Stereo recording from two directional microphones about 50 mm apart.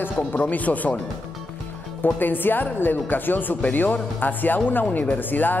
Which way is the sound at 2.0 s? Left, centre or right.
Left.